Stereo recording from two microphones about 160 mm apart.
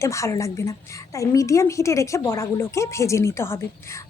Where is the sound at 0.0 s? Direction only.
20° left (ahead or behind).